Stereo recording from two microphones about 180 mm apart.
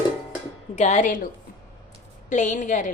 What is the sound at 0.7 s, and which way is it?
Speech, 40° left (ahead or behind).